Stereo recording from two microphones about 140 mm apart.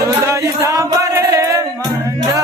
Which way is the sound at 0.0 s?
20° right (ahead or behind).